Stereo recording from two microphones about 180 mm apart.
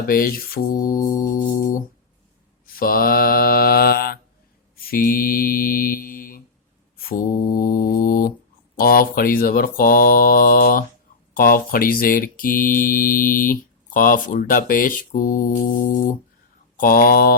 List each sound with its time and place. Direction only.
0.1 s mantra: 55° left (ahead or behind)
1.3 s music: 50° left (ahead or behind)
2.7 s mantra: 55° left (ahead or behind)